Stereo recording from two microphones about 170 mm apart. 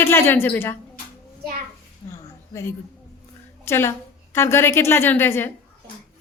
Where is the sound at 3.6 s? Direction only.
15° left (ahead or behind).